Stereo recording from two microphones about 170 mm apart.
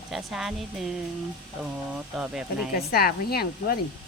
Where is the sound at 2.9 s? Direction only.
65° left (ahead or behind).